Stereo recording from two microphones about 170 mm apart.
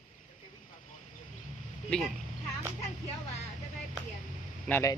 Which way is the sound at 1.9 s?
Centre (ahead or behind).